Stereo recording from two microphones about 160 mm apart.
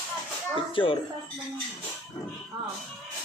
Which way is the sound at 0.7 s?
30° left (ahead or behind).